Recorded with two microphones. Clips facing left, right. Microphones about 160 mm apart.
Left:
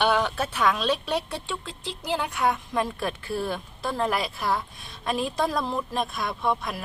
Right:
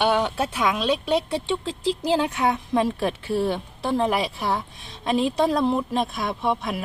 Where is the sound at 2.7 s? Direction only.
15° right (ahead or behind).